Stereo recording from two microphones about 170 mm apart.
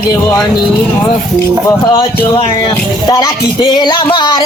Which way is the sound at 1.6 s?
20° left (ahead or behind).